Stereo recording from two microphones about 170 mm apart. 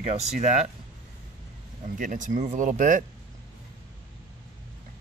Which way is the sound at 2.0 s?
50° right (ahead or behind).